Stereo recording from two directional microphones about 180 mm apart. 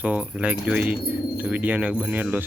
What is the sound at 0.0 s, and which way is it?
Speech, 5° right (ahead or behind).